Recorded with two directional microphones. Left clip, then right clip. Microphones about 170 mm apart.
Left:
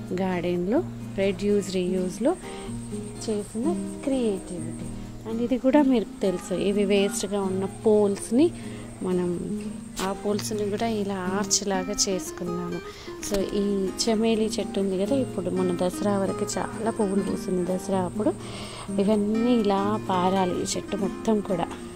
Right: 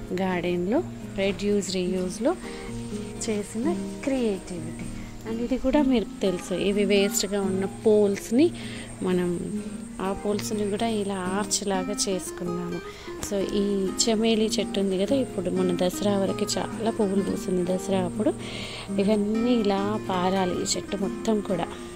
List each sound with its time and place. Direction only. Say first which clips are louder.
0.1 s a woman's voice: even; 10° left (ahead or behind)
5.5 s speech: left 3 dB; 30° left (ahead or behind)
5.9 s a woman's voice: left 1 dB; 10° left (ahead or behind)
18.9 s a woman's voice: left 1 dB; 15° left (ahead or behind)